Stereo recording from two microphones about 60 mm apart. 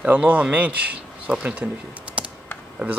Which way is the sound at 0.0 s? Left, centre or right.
Right.